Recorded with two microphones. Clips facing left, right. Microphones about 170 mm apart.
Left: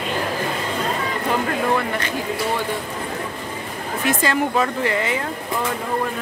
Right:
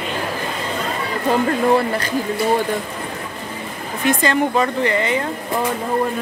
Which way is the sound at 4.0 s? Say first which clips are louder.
Right 3 dB; 5° left (ahead or behind).